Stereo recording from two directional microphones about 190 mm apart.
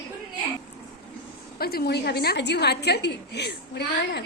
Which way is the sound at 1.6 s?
55° left (ahead or behind).